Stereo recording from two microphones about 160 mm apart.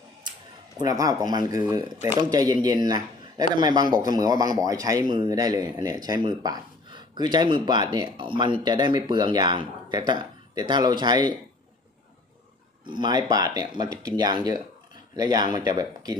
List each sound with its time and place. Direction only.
0.8 s speech: 20° right (ahead or behind)
12.8 s speech: 30° right (ahead or behind)